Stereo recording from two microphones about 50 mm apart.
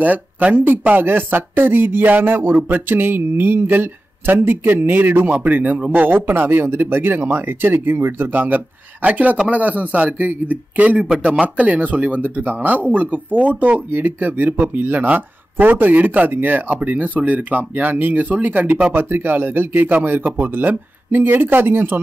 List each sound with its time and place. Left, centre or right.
0.0 s speech: right
0.8 s a sound: right
9.5 s speech: right
11.1 s speech: centre
11.4 s speech: right
18.9 s a sound: right